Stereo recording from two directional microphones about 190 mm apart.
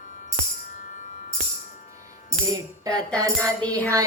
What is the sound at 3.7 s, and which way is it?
Music, 15° right (ahead or behind).